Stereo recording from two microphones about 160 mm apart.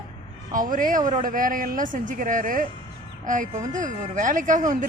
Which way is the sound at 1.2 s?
60° right (ahead or behind).